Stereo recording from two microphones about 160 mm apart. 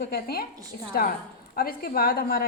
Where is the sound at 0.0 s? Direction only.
70° left (ahead or behind).